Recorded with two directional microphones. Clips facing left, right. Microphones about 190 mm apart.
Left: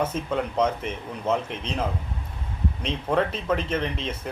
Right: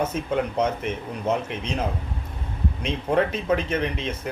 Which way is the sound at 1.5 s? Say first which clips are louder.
Right 1 dB; 10° right (ahead or behind).